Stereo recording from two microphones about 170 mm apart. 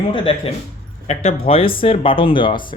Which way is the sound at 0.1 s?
35° left (ahead or behind).